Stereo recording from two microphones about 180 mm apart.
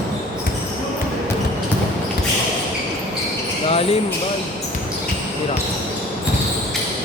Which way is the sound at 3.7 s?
30° left (ahead or behind).